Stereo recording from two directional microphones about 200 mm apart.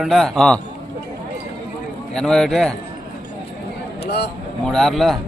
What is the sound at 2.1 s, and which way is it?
Speech, 5° left (ahead or behind).